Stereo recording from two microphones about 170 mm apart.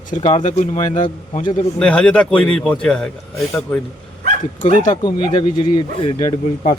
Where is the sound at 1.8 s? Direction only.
5° left (ahead or behind).